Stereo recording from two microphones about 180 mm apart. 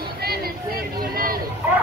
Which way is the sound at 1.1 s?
55° right (ahead or behind).